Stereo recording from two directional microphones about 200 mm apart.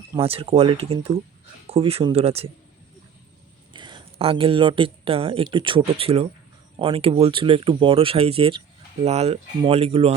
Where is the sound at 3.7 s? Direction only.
25° right (ahead or behind).